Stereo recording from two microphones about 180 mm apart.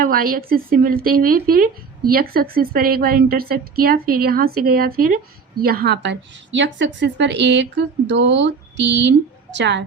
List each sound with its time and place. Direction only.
0.0 s a woman's voice: 55° right (ahead or behind); by 9.8 s 75° right (ahead or behind)